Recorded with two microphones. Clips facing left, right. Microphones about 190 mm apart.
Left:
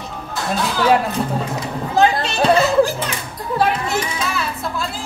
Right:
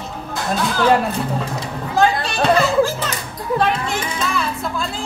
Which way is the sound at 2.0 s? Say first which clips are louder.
Left 1 dB; 20° left (ahead or behind).